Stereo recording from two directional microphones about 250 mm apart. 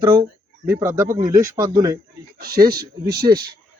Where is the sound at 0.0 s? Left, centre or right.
Centre.